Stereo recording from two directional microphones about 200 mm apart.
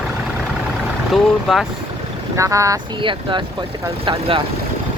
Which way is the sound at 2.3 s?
15° right (ahead or behind).